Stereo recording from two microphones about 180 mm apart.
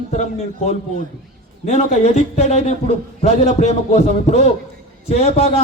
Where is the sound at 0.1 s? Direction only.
40° left (ahead or behind).